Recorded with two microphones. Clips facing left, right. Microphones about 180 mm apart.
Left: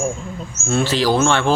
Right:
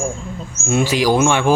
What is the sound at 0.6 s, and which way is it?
Speech, 15° right (ahead or behind).